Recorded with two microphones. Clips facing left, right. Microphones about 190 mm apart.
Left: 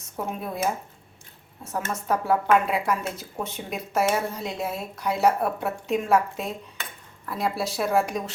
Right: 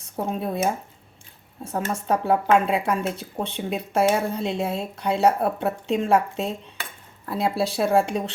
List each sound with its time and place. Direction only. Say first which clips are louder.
0.0 s speech: right 4 dB; 30° right (ahead or behind)